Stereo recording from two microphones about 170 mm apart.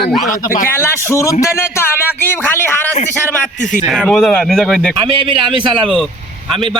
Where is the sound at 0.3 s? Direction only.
55° left (ahead or behind).